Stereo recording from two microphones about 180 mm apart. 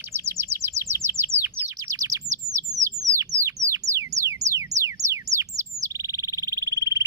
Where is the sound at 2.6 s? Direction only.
20° right (ahead or behind).